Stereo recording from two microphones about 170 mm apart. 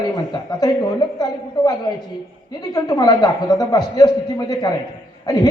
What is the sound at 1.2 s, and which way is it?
A man's voice, 25° left (ahead or behind).